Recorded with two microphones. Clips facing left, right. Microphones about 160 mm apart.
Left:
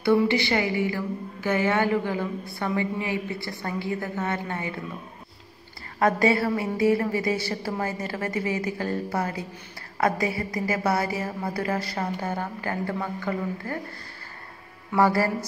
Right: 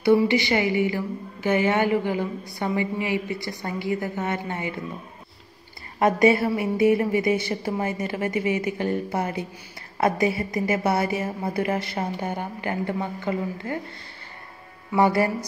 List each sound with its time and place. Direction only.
0.0 s a woman's voice: 15° right (ahead or behind)
5.9 s a woman's voice: 20° right (ahead or behind)
15.0 s a woman's voice: 20° right (ahead or behind)